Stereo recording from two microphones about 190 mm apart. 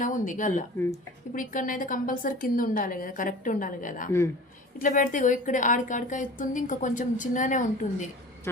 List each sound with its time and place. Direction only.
0.0 s a woman's voice: 45° left (ahead or behind)